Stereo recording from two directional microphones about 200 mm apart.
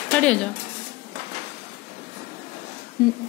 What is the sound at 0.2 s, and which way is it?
Speech, 5° left (ahead or behind).